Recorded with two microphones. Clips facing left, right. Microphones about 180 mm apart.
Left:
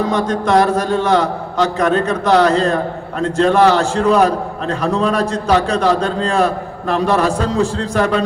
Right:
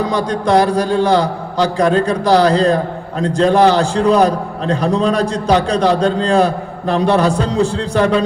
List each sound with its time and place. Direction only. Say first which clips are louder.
0.1 s a man's voice: right 1 dB; 35° right (ahead or behind)